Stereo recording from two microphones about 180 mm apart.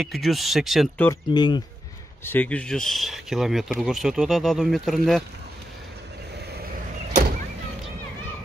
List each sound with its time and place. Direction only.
0.0 s speech: centre (ahead or behind)
1.3 s speech: 25° left (ahead or behind)
2.2 s speech: 10° left (ahead or behind)